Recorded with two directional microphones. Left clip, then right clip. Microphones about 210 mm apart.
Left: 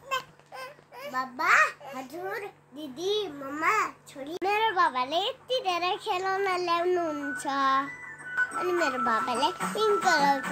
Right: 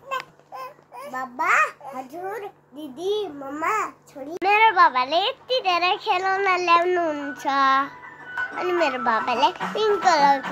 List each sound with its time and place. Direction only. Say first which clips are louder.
1.1 s a child's voice: right 2 dB; centre (ahead or behind)
1.9 s a child's voice: right 4 dB; 15° left (ahead or behind)